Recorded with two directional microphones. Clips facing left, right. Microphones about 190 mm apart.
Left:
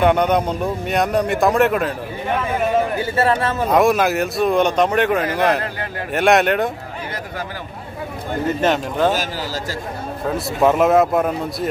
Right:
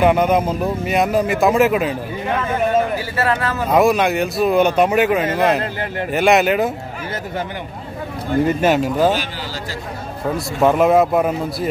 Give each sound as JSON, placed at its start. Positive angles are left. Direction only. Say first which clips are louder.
{"t": 0.0, "sound": "a man's voice", "louder": "right 1 dB", "side_deg": -5}
{"t": 3.0, "sound": "a man's voice", "louder": "left 2 dB", "side_deg": 25}
{"t": 3.7, "sound": "a man's voice", "louder": "right 1 dB", "side_deg": 0}
{"t": 5.6, "sound": "a man's voice", "louder": "right 3 dB", "side_deg": -25}
{"t": 6.1, "sound": "a man's voice", "louder": "right 1 dB", "side_deg": 0}
{"t": 8.5, "sound": "a man's voice", "louder": "right 3 dB", "side_deg": -5}
{"t": 10.3, "sound": "a man's voice", "louder": "even", "side_deg": 0}